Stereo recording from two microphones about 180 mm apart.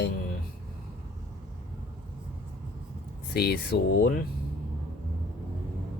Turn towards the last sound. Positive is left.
turn(degrees=65)  # may be behind; listen again after turning